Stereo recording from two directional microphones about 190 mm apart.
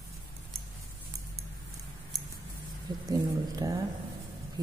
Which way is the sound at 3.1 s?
20° right (ahead or behind).